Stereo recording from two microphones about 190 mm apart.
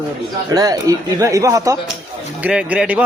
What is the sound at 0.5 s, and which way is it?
A man's voice, 20° right (ahead or behind).